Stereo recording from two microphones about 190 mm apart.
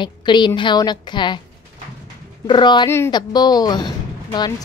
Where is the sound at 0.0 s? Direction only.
25° left (ahead or behind).